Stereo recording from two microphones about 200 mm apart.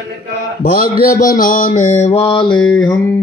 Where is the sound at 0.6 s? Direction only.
45° left (ahead or behind).